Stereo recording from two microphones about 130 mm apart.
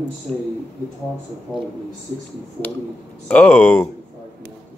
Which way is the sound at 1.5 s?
15° left (ahead or behind).